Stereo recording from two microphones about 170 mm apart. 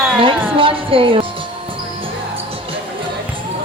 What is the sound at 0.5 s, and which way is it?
Music, 30° right (ahead or behind).